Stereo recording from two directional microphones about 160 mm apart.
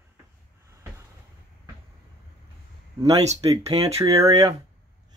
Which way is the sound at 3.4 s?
40° right (ahead or behind).